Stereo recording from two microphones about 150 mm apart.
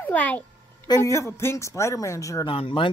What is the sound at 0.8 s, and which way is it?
Speech, 20° left (ahead or behind).